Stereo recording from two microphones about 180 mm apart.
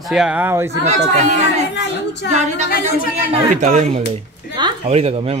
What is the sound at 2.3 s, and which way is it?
A man's voice, 40° right (ahead or behind).